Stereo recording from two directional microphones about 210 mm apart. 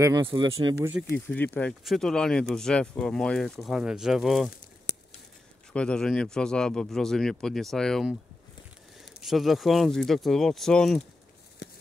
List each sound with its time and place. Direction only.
0.0 s speech: 20° right (ahead or behind)
1.1 s speech: 10° left (ahead or behind)
5.7 s speech: 5° left (ahead or behind)
9.2 s speech: centre (ahead or behind)